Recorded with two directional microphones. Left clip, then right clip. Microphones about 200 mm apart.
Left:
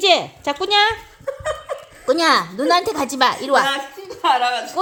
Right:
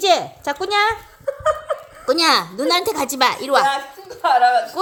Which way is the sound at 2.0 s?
Centre (ahead or behind).